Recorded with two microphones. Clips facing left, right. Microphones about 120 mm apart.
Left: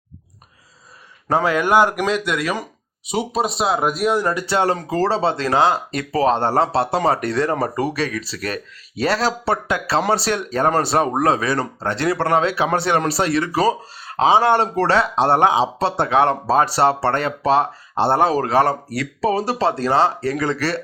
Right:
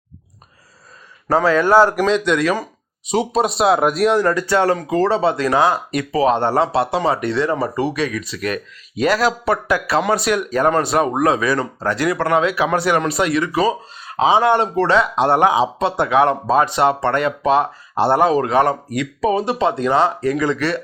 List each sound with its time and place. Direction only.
1.3 s speech: 15° left (ahead or behind); by 4.2 s centre (ahead or behind)
4.2 s speech: 20° left (ahead or behind)
4.9 s speech: 35° left (ahead or behind)